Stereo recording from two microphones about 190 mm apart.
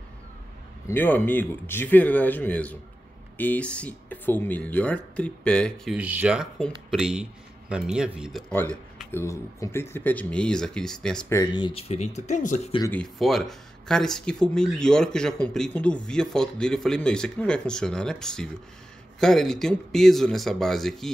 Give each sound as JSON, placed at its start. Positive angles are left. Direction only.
{"t": 0.8, "sound": "speech", "side_deg": 10}
{"t": 5.9, "sound": "speech", "side_deg": -5}
{"t": 9.1, "sound": "speech", "side_deg": 15}
{"t": 11.5, "sound": "speech", "side_deg": 30}
{"t": 12.8, "sound": "speech", "side_deg": 5}